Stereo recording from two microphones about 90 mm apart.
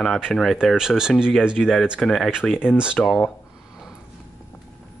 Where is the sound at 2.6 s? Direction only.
10° right (ahead or behind).